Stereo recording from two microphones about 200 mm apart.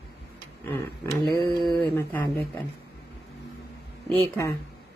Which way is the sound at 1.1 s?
20° right (ahead or behind).